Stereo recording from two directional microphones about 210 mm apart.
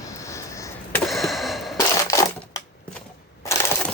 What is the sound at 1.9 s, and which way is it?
Coin, 15° left (ahead or behind).